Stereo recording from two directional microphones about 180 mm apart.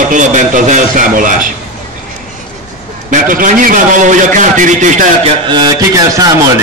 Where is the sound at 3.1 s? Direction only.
50° right (ahead or behind).